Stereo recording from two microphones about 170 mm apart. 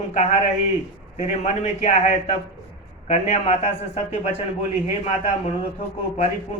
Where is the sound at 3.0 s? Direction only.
40° left (ahead or behind).